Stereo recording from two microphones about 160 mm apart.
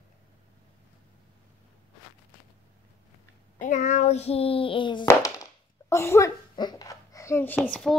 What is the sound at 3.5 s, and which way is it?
Child singing, 55° left (ahead or behind).